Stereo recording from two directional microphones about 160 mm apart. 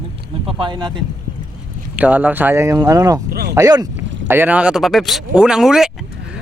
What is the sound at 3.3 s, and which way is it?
Speech, 90° right.